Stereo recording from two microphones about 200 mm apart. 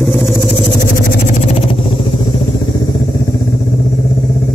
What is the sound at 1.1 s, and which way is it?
Vehicle, 35° left (ahead or behind).